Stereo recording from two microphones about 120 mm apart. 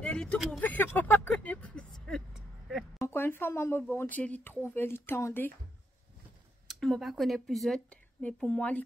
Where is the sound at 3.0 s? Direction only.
20° left (ahead or behind).